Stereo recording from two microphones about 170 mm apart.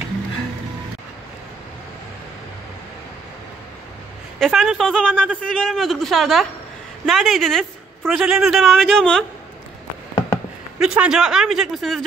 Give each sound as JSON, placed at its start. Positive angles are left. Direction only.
{"t": 4.4, "sound": "speech", "side_deg": 0}
{"t": 10.8, "sound": "speech", "side_deg": -5}